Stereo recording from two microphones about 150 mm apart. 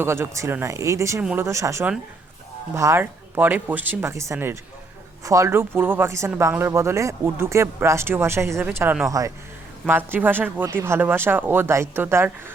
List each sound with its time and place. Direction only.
0.0 s speech: 15° right (ahead or behind)
1.2 s speech: 10° right (ahead or behind)
1.5 s speech: 20° right (ahead or behind)